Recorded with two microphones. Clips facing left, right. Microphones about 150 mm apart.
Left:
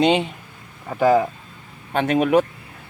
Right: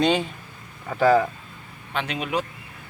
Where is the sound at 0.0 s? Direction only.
20° left (ahead or behind).